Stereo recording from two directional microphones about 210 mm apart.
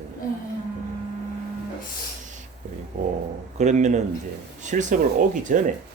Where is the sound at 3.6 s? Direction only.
35° right (ahead or behind).